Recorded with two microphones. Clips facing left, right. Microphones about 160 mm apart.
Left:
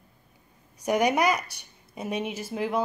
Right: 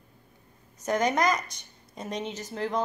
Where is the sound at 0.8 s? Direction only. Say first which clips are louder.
Left 2 dB; 10° left (ahead or behind).